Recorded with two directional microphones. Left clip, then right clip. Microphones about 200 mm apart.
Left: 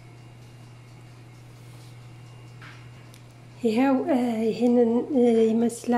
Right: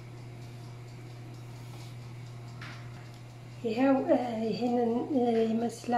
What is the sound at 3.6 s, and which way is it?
A woman's voice, 40° left (ahead or behind).